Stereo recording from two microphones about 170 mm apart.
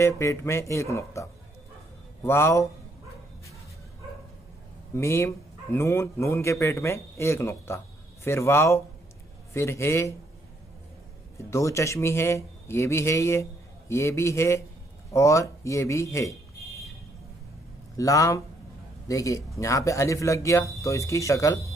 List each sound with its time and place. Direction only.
0.0 s speech: 15° left (ahead or behind)
4.9 s speech: 15° left (ahead or behind)
11.5 s speech: 15° left (ahead or behind)
17.9 s speech: 20° left (ahead or behind)